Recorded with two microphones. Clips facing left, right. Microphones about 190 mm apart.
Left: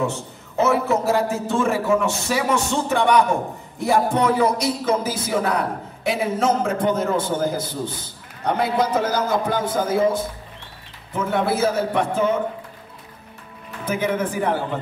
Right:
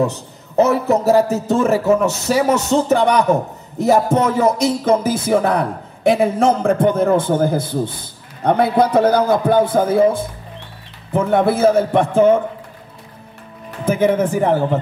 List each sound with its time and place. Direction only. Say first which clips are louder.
0.6 s a man's voice: right 5 dB; 40° right (ahead or behind)
3.8 s music: right 4 dB; 40° right (ahead or behind)
8.5 s a man's voice: right 6 dB; 55° right (ahead or behind)
11.3 s music: right 7 dB; 50° right (ahead or behind)
13.8 s music: right 7 dB; 50° right (ahead or behind)